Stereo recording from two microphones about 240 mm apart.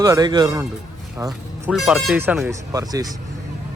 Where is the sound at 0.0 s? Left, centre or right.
Centre.